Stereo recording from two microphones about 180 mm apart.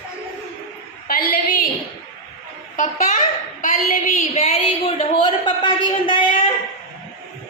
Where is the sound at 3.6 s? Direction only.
45° left (ahead or behind); by 6.5 s 30° left (ahead or behind).